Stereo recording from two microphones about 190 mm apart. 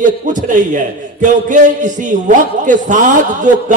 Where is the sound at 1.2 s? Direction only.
40° right (ahead or behind).